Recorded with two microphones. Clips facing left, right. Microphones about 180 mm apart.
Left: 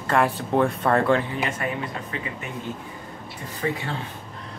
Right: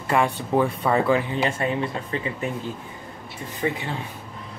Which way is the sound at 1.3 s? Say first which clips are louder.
Right 3 dB; 30° right (ahead or behind).